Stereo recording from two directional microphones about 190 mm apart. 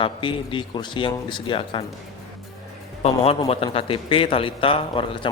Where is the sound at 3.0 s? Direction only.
30° left (ahead or behind).